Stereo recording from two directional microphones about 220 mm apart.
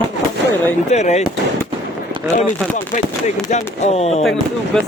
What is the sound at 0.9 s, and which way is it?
Speech, 30° left (ahead or behind).